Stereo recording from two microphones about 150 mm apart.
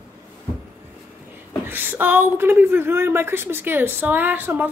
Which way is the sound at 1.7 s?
15° right (ahead or behind).